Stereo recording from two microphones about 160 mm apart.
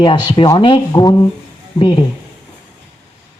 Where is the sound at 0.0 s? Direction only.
30° left (ahead or behind).